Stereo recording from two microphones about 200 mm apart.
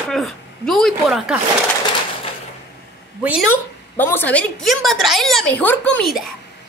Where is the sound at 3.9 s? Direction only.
10° left (ahead or behind).